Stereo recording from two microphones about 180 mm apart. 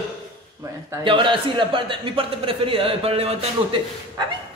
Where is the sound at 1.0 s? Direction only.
30° right (ahead or behind).